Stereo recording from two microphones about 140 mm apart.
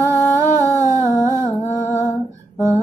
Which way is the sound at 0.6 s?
25° right (ahead or behind).